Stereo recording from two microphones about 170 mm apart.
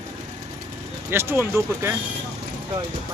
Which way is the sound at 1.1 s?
15° right (ahead or behind).